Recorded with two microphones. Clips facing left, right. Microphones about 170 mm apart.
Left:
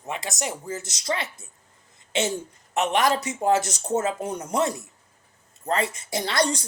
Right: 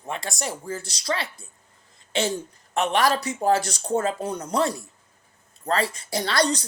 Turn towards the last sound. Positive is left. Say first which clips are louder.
# right 1 dB
turn(degrees=25)  # may be behind; listen again after turning